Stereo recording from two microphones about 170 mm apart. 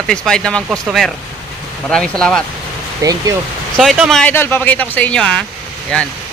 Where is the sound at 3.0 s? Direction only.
20° right (ahead or behind).